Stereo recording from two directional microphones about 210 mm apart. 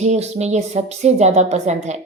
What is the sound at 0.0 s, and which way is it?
A woman's voice, 30° right (ahead or behind).